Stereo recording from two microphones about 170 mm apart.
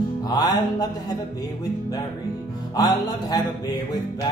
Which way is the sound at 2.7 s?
20° left (ahead or behind).